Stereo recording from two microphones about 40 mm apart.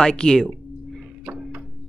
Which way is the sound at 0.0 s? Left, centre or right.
Centre.